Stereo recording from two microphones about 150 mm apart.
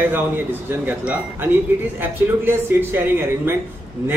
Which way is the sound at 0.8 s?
10° right (ahead or behind).